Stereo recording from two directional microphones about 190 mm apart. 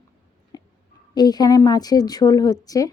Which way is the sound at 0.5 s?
20° left (ahead or behind).